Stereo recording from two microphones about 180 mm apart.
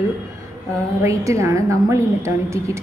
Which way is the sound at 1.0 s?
15° right (ahead or behind).